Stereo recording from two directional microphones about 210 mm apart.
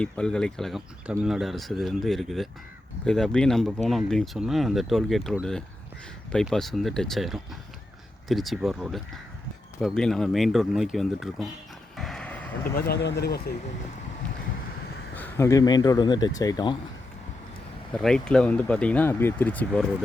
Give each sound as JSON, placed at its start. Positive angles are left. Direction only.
{"t": 0.0, "sound": "speech", "side_deg": 5}
{"t": 11.9, "sound": "vehicle", "side_deg": 0}
{"t": 12.7, "sound": "speech", "side_deg": 50}
{"t": 15.1, "sound": "speech", "side_deg": 10}
{"t": 17.9, "sound": "speech", "side_deg": 5}